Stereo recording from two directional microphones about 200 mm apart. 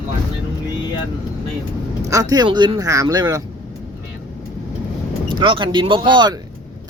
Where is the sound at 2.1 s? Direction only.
15° right (ahead or behind).